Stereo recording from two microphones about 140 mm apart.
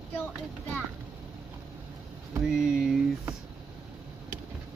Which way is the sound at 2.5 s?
5° right (ahead or behind).